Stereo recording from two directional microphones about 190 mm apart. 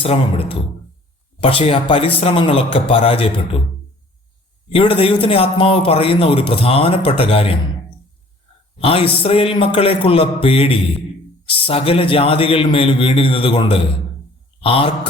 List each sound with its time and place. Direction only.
0.0 s a man's voice: 30° left (ahead or behind)
4.7 s a man's voice: 30° left (ahead or behind)
8.8 s a man's voice: 30° left (ahead or behind)